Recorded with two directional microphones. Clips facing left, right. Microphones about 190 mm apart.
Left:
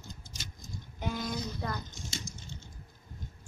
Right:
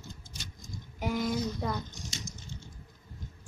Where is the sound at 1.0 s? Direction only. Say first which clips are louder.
Right 5 dB; 10° right (ahead or behind).